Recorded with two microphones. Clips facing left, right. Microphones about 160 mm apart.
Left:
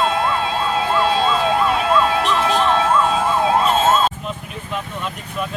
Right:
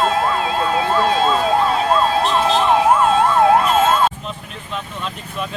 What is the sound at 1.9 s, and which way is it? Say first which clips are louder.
Emergency vehicle: right 1 dB; 35° right (ahead or behind).